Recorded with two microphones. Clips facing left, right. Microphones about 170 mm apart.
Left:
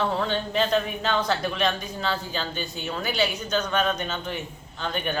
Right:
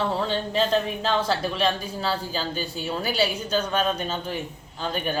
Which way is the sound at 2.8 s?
40° right (ahead or behind).